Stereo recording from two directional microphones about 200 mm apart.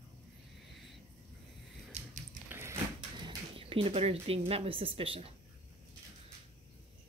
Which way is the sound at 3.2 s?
25° right (ahead or behind).